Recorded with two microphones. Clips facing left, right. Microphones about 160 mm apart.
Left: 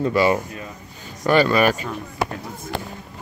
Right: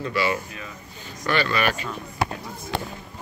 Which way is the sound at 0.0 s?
40° left (ahead or behind).